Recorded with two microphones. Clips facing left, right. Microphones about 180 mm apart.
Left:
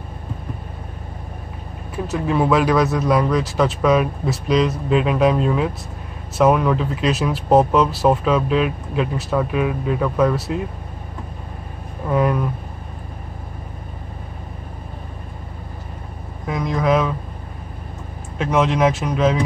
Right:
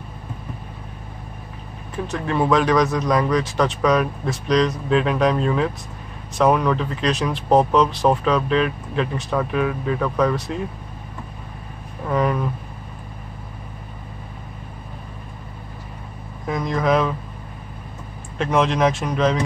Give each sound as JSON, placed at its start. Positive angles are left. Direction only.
{"t": 2.0, "sound": "speech", "side_deg": 5}
{"t": 12.1, "sound": "speech", "side_deg": 5}
{"t": 16.4, "sound": "speech", "side_deg": 0}
{"t": 18.4, "sound": "speech", "side_deg": 0}